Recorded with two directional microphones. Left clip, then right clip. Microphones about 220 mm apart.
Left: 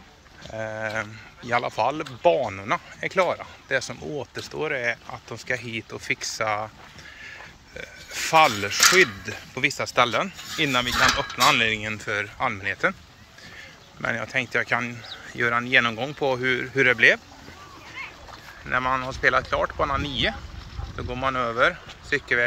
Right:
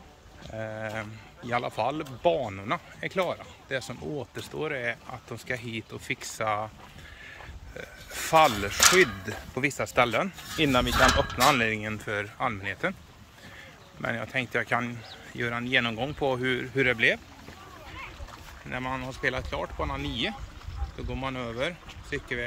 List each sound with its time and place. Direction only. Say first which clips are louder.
0.5 s speech: left 5 dB; 10° right (ahead or behind)
7.2 s a sound: left 4 dB; 15° right (ahead or behind)
8.9 s speech: left 3 dB; 20° right (ahead or behind)
14.0 s speech: left 5 dB; 10° right (ahead or behind)
18.7 s speech: left 9 dB; 5° right (ahead or behind)